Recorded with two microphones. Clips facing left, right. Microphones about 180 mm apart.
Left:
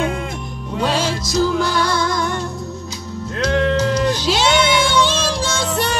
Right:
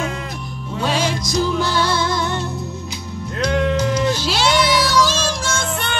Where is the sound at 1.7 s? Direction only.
25° right (ahead or behind).